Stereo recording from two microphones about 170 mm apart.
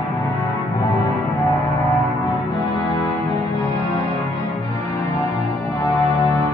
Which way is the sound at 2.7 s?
30° left (ahead or behind).